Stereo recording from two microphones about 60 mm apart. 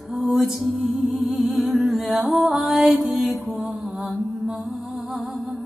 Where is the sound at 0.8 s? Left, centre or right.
Centre.